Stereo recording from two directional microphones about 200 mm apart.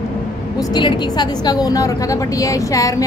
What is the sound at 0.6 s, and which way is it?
A woman's voice, 20° left (ahead or behind).